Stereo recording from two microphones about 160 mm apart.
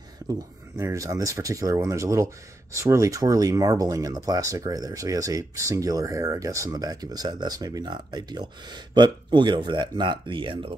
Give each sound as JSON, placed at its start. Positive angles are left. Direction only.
{"t": 0.3, "sound": "speech", "side_deg": -20}